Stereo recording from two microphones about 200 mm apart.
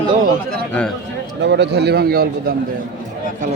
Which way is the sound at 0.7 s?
5° left (ahead or behind).